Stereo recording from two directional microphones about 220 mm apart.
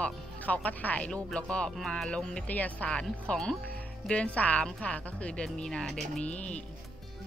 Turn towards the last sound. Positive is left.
turn(degrees=5)  # may be behind; listen again after turning